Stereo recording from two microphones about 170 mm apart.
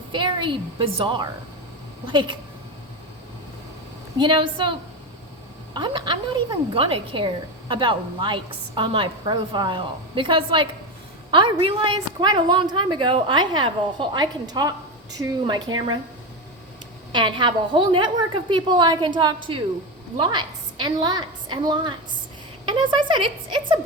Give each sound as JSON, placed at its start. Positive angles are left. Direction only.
{"t": 0.1, "sound": "a woman's voice", "side_deg": -30}
{"t": 4.2, "sound": "a woman's voice", "side_deg": -30}
{"t": 17.1, "sound": "a woman's voice", "side_deg": -30}